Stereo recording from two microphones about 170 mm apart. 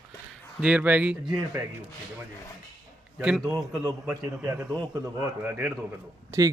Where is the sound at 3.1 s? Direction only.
5° right (ahead or behind).